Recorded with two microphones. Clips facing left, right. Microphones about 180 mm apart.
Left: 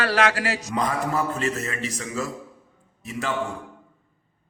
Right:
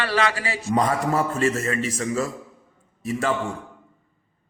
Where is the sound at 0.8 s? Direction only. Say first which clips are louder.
Right 4 dB; 40° right (ahead or behind).